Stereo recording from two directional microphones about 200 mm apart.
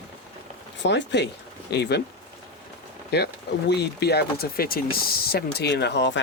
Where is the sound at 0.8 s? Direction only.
60° left (ahead or behind).